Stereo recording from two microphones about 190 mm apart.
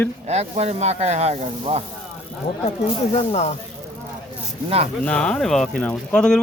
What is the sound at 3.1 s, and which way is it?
Speech, 35° left (ahead or behind).